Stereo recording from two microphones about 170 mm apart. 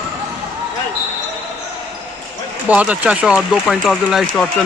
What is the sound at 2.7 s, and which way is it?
Speech, 10° right (ahead or behind).